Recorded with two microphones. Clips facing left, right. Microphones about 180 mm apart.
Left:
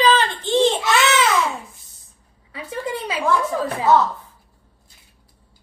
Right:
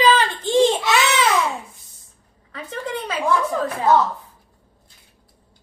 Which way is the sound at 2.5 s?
10° left (ahead or behind).